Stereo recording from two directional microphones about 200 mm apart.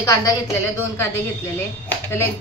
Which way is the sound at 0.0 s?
15° left (ahead or behind).